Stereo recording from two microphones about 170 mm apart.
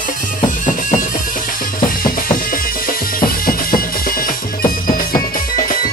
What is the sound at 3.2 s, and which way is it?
Music, 60° left (ahead or behind).